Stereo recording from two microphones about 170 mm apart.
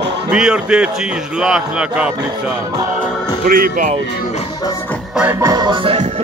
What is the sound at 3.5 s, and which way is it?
Speech, 55° right (ahead or behind).